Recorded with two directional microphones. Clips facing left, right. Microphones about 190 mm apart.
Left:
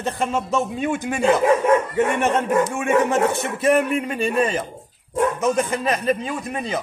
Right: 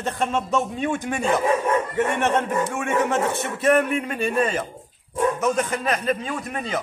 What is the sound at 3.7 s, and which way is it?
A man's voice, 15° left (ahead or behind).